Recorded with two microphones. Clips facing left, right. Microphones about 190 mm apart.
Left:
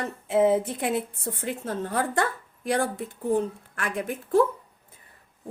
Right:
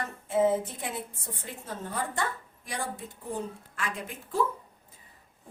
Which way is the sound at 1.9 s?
65° left (ahead or behind).